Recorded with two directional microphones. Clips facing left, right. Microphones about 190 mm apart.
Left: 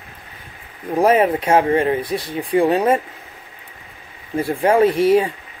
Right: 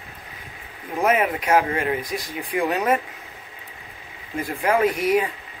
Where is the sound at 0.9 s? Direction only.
30° left (ahead or behind).